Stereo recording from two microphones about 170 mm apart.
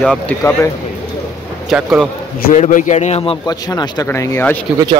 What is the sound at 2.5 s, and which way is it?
Speech, 45° left (ahead or behind).